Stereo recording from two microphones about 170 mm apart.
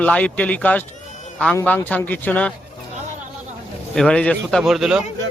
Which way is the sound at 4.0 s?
5° left (ahead or behind).